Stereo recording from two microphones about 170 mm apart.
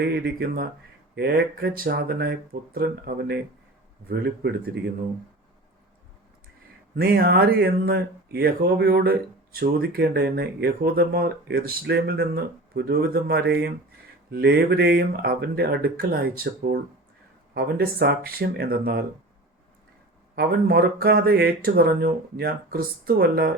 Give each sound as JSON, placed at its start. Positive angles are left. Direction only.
{"t": 0.0, "sound": "speech", "side_deg": -65}
{"t": 4.1, "sound": "a man's voice", "side_deg": -70}
{"t": 6.9, "sound": "speech", "side_deg": -70}
{"t": 20.3, "sound": "speech", "side_deg": -65}